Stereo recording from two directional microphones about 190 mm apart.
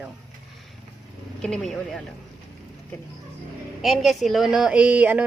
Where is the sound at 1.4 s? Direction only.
5° left (ahead or behind).